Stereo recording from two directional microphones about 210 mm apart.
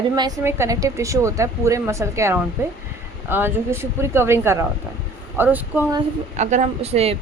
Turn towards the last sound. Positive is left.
turn(degrees=-30)  # may be behind; listen again after turning